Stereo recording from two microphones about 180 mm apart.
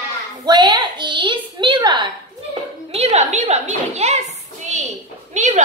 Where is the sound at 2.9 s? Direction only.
35° right (ahead or behind).